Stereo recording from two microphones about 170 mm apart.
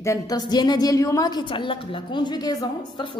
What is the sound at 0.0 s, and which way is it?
A woman's voice, 20° left (ahead or behind).